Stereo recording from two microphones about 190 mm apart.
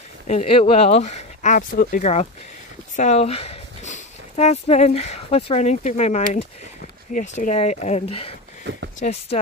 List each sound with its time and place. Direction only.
0.3 s speech: 35° left (ahead or behind)
8.7 s speech: 65° right (ahead or behind)
9.0 s speech: 35° left (ahead or behind)